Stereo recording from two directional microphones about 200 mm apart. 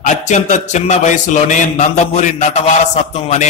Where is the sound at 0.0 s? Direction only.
35° left (ahead or behind).